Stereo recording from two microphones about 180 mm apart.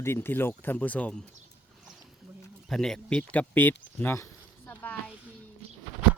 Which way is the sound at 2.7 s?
Centre (ahead or behind).